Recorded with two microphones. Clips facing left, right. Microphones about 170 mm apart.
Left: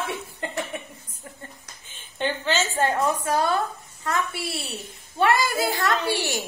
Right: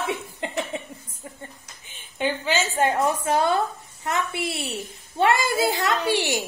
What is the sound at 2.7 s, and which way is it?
A woman's voice, 20° right (ahead or behind).